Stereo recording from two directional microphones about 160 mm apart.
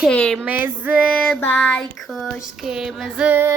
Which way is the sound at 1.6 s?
5° left (ahead or behind).